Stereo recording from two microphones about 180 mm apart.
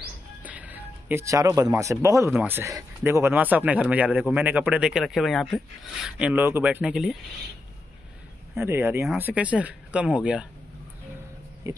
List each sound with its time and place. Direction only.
0.4 s speech: 10° right (ahead or behind)
8.5 s speech: 15° right (ahead or behind)
11.6 s speech: 15° right (ahead or behind)